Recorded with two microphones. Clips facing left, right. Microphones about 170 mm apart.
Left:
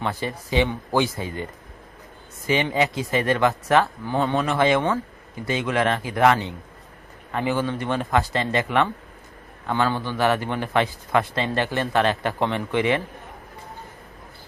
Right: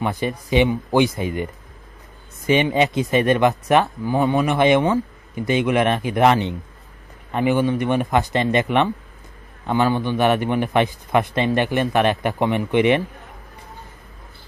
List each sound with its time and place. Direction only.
0.0 s a man's voice: 15° right (ahead or behind)
2.5 s a man's voice: 20° right (ahead or behind)